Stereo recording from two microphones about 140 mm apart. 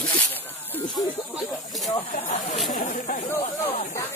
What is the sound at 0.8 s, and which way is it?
Snake, 30° left (ahead or behind).